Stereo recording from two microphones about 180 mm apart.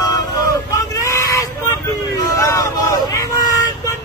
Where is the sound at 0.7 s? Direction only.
20° left (ahead or behind).